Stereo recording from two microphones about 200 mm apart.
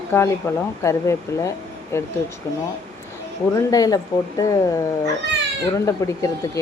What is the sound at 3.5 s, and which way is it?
Speech, 15° left (ahead or behind).